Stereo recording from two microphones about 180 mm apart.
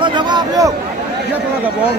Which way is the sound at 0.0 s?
25° right (ahead or behind).